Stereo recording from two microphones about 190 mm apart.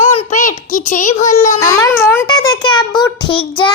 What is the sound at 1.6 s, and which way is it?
A child's voice, 15° left (ahead or behind).